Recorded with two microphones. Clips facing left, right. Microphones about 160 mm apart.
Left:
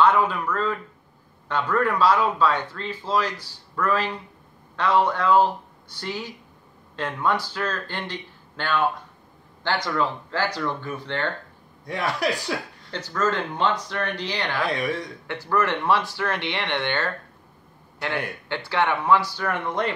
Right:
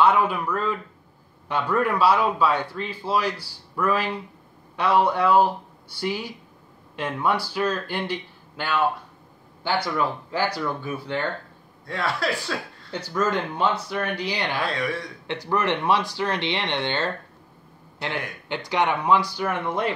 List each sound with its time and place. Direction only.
0.0 s speech: 10° right (ahead or behind)
11.8 s speech: 20° left (ahead or behind)
12.9 s speech: 10° right (ahead or behind)
14.6 s speech: 20° left (ahead or behind)
15.2 s speech: 15° right (ahead or behind)
16.8 s speech: 25° right (ahead or behind)
18.0 s speech: 15° right (ahead or behind)